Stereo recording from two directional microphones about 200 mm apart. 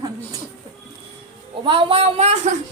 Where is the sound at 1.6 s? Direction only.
25° right (ahead or behind).